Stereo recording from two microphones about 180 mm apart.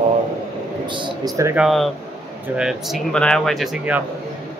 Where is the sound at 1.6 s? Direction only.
Centre (ahead or behind).